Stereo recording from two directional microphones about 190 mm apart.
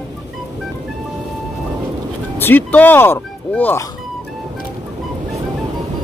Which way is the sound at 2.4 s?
10° left (ahead or behind).